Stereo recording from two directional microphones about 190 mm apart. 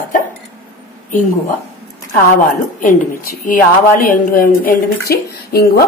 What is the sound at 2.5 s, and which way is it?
A woman's voice, 45° left (ahead or behind).